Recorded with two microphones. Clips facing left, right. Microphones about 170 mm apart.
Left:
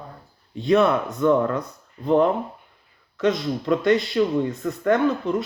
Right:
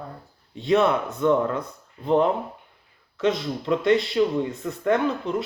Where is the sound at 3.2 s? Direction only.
25° right (ahead or behind).